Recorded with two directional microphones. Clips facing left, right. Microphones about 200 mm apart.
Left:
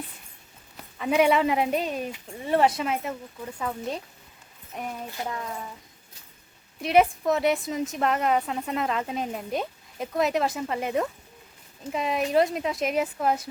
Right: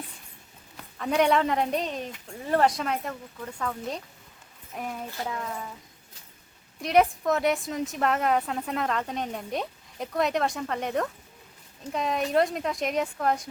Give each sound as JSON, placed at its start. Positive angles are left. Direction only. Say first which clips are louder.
{"t": 0.9, "sound": "a woman's voice", "louder": "left 2 dB", "side_deg": 5}
{"t": 4.7, "sound": "a woman's voice", "louder": "even", "side_deg": 0}
{"t": 6.7, "sound": "a woman's voice", "louder": "left 1 dB", "side_deg": 0}